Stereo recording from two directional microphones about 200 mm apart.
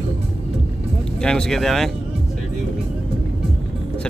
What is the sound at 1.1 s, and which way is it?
Speech, 5° left (ahead or behind).